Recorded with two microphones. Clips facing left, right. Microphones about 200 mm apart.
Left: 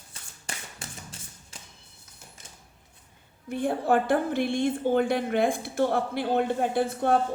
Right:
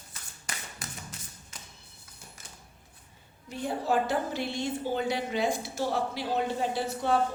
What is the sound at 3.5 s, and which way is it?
A woman's voice, 55° left (ahead or behind).